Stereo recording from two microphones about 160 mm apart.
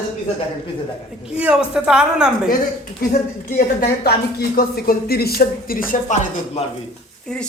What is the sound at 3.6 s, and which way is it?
Speech, 70° left (ahead or behind).